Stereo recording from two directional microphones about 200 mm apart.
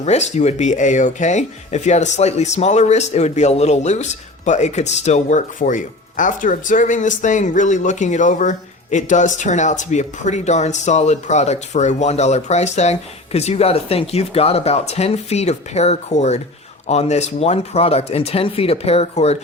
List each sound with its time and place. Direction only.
0.0 s speech: 35° left (ahead or behind)